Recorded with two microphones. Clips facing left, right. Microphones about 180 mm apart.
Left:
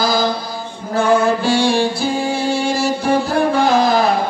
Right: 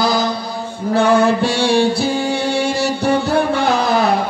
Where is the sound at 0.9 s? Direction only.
70° right (ahead or behind).